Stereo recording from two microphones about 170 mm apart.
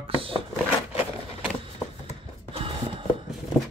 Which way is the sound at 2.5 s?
30° right (ahead or behind).